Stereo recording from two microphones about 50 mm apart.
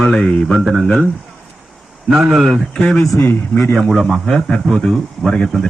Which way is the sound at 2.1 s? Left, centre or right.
Centre.